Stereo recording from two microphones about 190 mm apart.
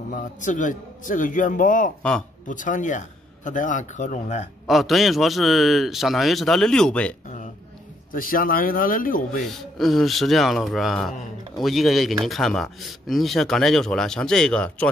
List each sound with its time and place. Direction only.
0.1 s a man's voice: 45° left (ahead or behind)
4.6 s speech: centre (ahead or behind)
7.2 s a sound: 40° left (ahead or behind)
8.1 s a man's voice: 45° left (ahead or behind)
9.4 s speech: centre (ahead or behind)